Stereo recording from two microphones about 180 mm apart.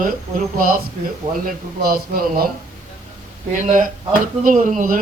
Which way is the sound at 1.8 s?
55° right (ahead or behind).